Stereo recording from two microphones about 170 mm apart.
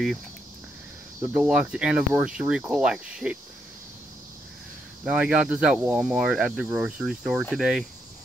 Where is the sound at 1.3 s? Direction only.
5° right (ahead or behind).